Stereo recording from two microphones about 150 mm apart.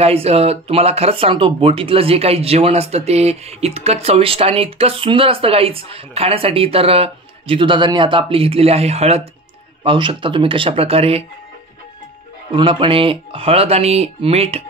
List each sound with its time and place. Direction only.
0.0 s speech: 45° right (ahead or behind)
9.8 s speech: 35° right (ahead or behind)
12.5 s speech: 35° right (ahead or behind)